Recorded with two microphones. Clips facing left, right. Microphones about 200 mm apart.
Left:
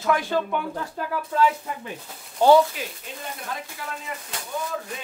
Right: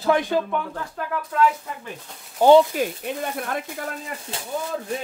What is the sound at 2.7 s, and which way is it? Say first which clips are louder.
Speech: right 10 dB; 55° right (ahead or behind).